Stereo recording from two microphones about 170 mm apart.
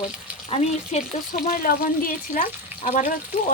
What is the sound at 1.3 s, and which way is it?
Speech, 55° left (ahead or behind).